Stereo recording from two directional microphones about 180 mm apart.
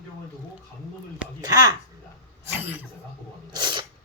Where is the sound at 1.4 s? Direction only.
20° right (ahead or behind).